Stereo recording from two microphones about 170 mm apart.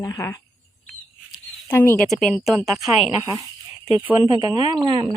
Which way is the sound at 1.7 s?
10° left (ahead or behind).